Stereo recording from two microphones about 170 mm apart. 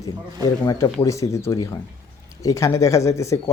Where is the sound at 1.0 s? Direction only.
15° left (ahead or behind).